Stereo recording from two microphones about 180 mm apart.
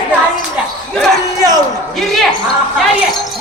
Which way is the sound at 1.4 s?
20° right (ahead or behind).